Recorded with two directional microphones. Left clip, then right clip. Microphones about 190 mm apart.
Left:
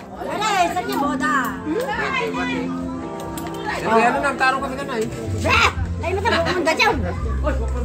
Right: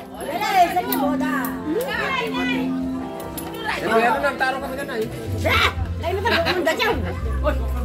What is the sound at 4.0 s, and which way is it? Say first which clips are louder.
Speech: left 2 dB; 50° left (ahead or behind).